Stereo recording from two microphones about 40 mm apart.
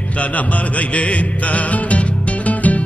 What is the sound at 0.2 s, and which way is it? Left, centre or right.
Music, left.